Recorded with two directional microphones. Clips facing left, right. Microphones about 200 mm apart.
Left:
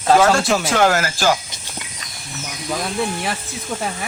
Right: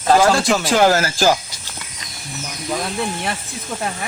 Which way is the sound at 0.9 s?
35° right (ahead or behind).